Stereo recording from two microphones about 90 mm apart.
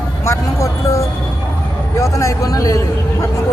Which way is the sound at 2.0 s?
35° left (ahead or behind).